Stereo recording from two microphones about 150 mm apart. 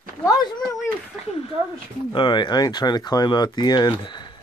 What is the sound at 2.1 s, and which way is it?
Speech, 30° left (ahead or behind).